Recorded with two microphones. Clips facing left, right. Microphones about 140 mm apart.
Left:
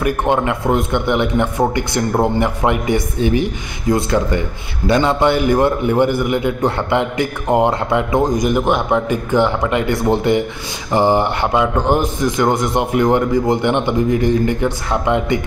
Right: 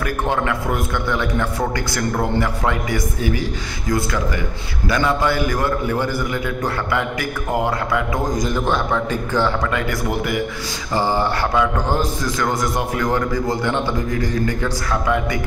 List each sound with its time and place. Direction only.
0.0 s a man's voice: 20° left (ahead or behind)